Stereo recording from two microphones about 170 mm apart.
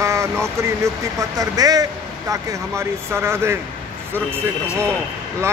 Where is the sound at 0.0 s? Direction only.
15° right (ahead or behind).